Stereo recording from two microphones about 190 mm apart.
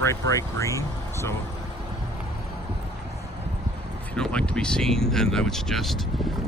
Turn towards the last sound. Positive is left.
turn(degrees=0)  # may be behind; listen again after turning